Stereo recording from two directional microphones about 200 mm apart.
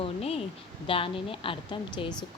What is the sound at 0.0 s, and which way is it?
A woman's voice, 30° left (ahead or behind).